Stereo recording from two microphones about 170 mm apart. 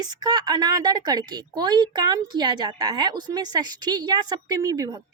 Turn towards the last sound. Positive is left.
turn(degrees=-20)  # may be behind; listen again after turning